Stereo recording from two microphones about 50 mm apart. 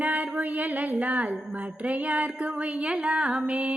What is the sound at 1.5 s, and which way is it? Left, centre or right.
A woman's voice, right.